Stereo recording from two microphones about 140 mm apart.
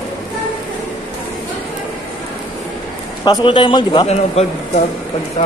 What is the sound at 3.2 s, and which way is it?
Speech, 35° left (ahead or behind).